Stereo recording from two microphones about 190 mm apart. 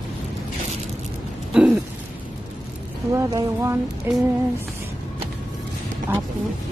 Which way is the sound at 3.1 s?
15° right (ahead or behind).